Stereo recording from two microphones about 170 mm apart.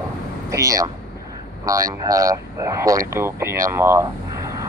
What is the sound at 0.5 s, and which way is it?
Speech, 20° right (ahead or behind).